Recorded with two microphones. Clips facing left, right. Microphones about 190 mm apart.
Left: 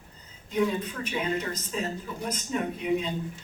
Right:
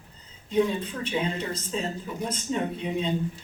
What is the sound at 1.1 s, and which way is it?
Speech, 30° right (ahead or behind).